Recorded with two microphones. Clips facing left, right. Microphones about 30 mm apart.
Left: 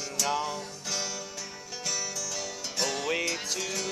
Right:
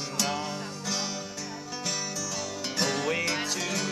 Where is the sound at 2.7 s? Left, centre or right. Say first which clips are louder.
Right 1 dB; centre.